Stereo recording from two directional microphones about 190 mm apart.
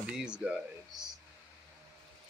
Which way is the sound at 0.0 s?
5° right (ahead or behind).